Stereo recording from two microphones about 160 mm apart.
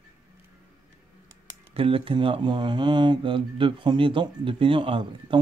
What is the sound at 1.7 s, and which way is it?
Speech, 35° right (ahead or behind).